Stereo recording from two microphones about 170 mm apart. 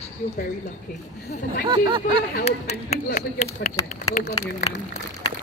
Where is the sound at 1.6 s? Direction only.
30° right (ahead or behind).